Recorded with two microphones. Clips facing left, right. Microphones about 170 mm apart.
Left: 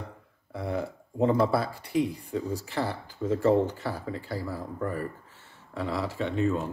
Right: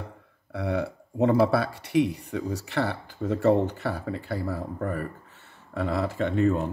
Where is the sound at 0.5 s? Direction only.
70° right (ahead or behind).